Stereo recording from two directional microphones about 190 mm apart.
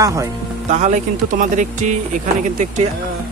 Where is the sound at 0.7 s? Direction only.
40° right (ahead or behind).